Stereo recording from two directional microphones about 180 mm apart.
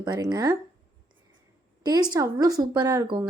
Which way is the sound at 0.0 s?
25° right (ahead or behind).